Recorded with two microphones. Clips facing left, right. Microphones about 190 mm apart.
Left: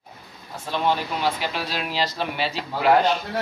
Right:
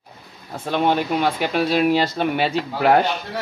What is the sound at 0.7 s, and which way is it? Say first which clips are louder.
Speech: right 5 dB; 55° right (ahead or behind).